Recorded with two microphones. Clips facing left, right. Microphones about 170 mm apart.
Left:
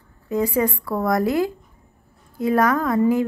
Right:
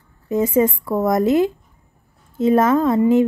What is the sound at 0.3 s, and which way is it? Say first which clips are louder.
A woman's voice: right 4 dB; 20° right (ahead or behind).